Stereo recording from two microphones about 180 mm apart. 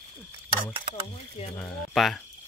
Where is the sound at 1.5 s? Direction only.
10° left (ahead or behind).